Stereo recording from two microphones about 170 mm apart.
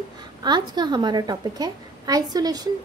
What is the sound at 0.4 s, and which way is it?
Speech, 25° right (ahead or behind).